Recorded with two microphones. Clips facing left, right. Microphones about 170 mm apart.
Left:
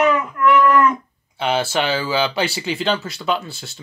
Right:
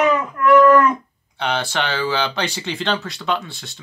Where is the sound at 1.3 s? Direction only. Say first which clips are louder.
Left 3 dB; 5° left (ahead or behind).